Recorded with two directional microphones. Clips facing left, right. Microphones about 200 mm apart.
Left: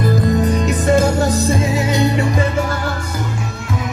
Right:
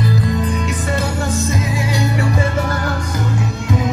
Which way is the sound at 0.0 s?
45° left (ahead or behind).